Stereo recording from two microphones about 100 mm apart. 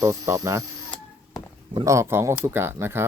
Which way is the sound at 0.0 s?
35° right (ahead or behind).